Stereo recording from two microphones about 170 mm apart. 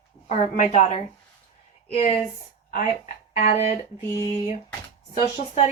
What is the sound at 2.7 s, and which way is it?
Speech, 50° left (ahead or behind).